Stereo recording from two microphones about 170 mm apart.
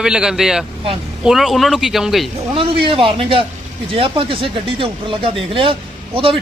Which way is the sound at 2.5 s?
30° right (ahead or behind).